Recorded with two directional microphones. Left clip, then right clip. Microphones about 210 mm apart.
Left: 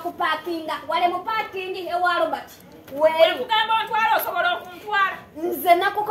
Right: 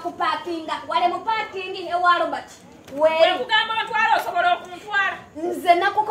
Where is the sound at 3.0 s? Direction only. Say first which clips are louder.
Even; 15° left (ahead or behind).